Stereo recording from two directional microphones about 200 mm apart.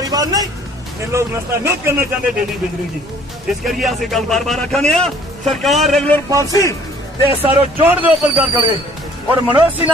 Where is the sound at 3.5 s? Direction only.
Centre (ahead or behind).